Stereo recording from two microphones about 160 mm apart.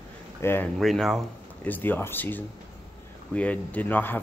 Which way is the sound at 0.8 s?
Centre (ahead or behind).